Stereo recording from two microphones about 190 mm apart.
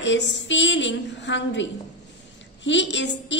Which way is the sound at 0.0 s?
70° left (ahead or behind).